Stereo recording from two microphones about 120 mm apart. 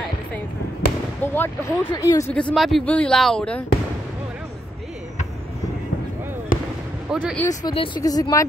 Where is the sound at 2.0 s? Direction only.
25° left (ahead or behind).